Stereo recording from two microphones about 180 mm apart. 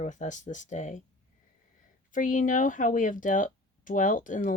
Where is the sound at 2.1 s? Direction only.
45° left (ahead or behind).